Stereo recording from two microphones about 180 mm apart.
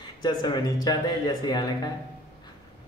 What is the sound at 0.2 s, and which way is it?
Speech, 25° left (ahead or behind).